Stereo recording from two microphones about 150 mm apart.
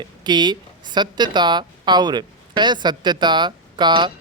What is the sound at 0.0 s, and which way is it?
Speech, 30° right (ahead or behind).